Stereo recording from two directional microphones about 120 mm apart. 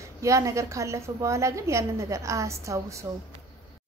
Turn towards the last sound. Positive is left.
turn(degrees=-25)  # may be behind; listen again after turning